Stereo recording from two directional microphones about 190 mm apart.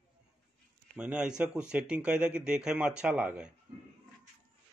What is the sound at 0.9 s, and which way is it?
Speech, 5° right (ahead or behind).